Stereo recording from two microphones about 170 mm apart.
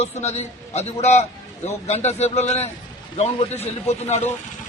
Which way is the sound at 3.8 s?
40° left (ahead or behind).